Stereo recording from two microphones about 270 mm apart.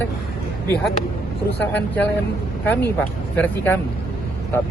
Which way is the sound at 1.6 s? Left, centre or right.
Centre.